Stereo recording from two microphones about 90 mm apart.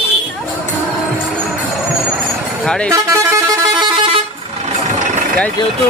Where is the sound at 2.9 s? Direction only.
35° right (ahead or behind).